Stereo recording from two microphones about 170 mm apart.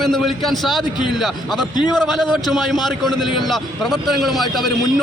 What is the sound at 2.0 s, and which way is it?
Speech, centre (ahead or behind).